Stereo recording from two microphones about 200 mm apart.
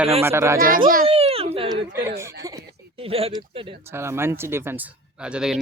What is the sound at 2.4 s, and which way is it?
Speech, 15° right (ahead or behind).